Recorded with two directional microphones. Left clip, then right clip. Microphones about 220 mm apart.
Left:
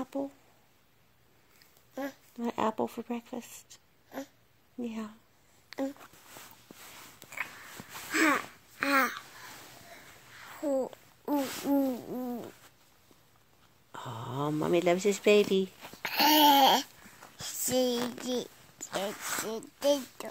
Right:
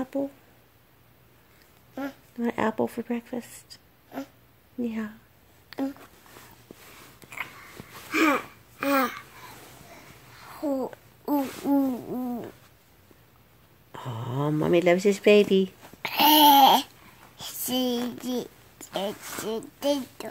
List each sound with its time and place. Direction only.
0.0 s speech: centre (ahead or behind)
2.0 s speech: centre (ahead or behind)
3.5 s speech: 30° right (ahead or behind)
4.1 s speech: 5° right (ahead or behind)
8.1 s babbling: centre (ahead or behind)
9.9 s a sound: centre (ahead or behind)
11.7 s hoot: 5° left (ahead or behind)
13.9 s speech: centre (ahead or behind)
16.0 s babbling: 5° left (ahead or behind)
17.4 s a sound: 5° left (ahead or behind)
17.9 s a child's voice: 45° left (ahead or behind)
18.2 s a sound: centre (ahead or behind)
19.1 s speech: 35° left (ahead or behind)
19.5 s a child's voice: centre (ahead or behind)